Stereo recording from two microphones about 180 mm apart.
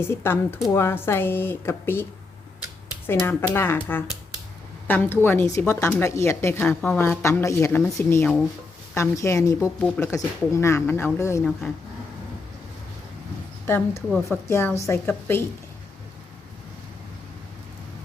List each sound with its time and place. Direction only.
0.0 s a woman's voice: 10° left (ahead or behind)
3.2 s a woman's voice: 15° left (ahead or behind)
13.7 s a woman's voice: 10° left (ahead or behind)